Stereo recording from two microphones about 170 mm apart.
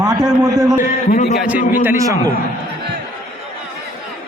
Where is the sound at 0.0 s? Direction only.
25° right (ahead or behind).